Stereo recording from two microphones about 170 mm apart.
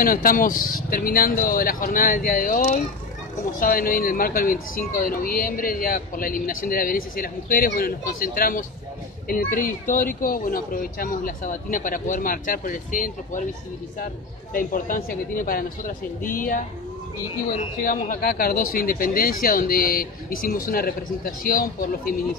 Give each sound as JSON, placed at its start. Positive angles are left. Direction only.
{"t": 0.0, "sound": "speech", "side_deg": 55}
{"t": 14.5, "sound": "speech", "side_deg": 55}
{"t": 17.7, "sound": "speech", "side_deg": 50}